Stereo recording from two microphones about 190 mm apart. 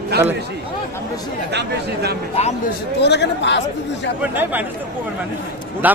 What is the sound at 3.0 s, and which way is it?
Speech, 65° left (ahead or behind).